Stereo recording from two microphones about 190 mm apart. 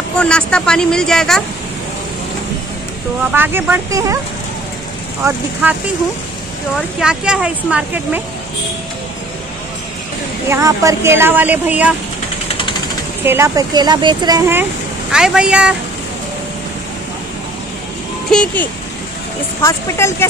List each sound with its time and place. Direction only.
0.2 s a woman's voice: 5° left (ahead or behind)
3.3 s speech: 10° right (ahead or behind)
5.2 s speech: 10° right (ahead or behind)
7.0 s a woman's voice: 5° right (ahead or behind)
10.5 s speech: 15° right (ahead or behind)
13.2 s speech: 15° right (ahead or behind)
15.1 s a woman's voice: 5° right (ahead or behind)
18.3 s speech: 5° left (ahead or behind)